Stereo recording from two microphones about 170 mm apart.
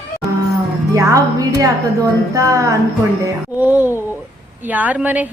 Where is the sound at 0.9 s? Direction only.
20° right (ahead or behind).